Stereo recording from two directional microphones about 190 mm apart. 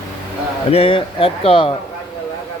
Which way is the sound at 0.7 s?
30° left (ahead or behind).